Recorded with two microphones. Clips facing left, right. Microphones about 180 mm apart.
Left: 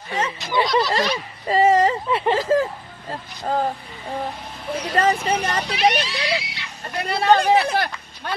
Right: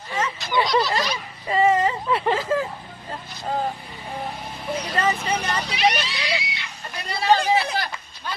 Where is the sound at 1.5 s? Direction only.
35° left (ahead or behind).